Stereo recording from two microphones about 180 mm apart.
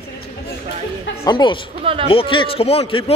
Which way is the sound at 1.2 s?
25° left (ahead or behind).